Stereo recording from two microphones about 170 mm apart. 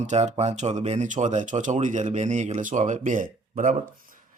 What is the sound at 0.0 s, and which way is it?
Speech, 40° right (ahead or behind).